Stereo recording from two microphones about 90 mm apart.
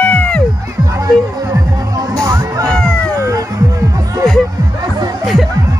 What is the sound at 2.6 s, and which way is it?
Music, 10° left (ahead or behind).